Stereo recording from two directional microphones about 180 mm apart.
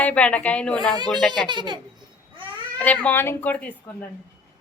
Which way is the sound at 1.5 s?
25° right (ahead or behind).